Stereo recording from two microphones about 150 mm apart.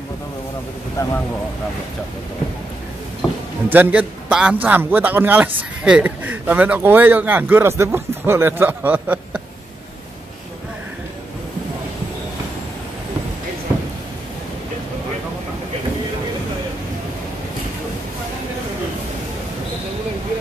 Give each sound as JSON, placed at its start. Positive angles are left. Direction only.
{"t": 1.0, "sound": "speech", "side_deg": 20}
{"t": 3.6, "sound": "a man's voice", "side_deg": -10}